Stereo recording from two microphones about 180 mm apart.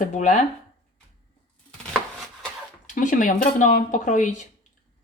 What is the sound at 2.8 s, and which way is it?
Speech, 45° left (ahead or behind).